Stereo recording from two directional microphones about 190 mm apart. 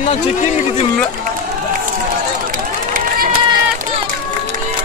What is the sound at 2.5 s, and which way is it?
Run, 50° right (ahead or behind).